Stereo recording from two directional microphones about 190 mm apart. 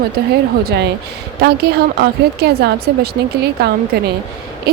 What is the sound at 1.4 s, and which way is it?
A woman's voice, 55° right (ahead or behind).